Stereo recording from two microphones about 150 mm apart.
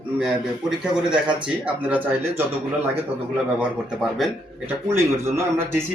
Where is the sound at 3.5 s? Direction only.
5° right (ahead or behind).